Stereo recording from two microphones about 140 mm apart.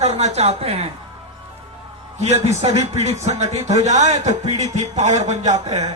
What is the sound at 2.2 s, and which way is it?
A man's voice, 55° right (ahead or behind).